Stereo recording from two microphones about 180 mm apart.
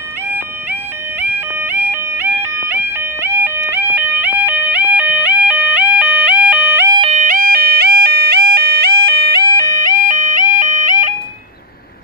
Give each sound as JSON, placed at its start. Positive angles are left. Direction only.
{"t": 1.2, "sound": "music", "side_deg": -10}
{"t": 6.9, "sound": "music", "side_deg": -30}
{"t": 7.2, "sound": "music", "side_deg": -50}